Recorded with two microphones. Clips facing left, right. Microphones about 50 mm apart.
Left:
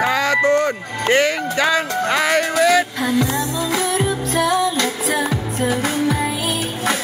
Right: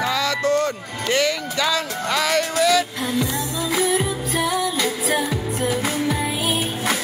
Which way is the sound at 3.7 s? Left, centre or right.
Centre.